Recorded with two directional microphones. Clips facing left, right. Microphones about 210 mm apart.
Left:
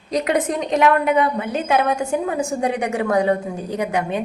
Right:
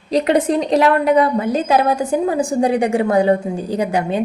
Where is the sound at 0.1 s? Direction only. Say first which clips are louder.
Right 5 dB; 30° right (ahead or behind).